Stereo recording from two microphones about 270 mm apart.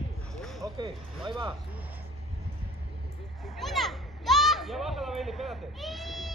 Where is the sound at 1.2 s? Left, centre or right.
Centre.